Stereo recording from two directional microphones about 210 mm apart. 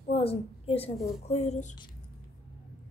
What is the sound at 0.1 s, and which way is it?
A woman's voice, 30° left (ahead or behind).